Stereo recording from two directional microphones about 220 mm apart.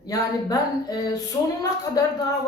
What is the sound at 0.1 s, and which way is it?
A woman's voice, 15° left (ahead or behind).